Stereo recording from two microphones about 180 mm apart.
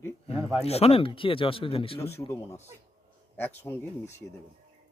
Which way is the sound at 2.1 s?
15° left (ahead or behind).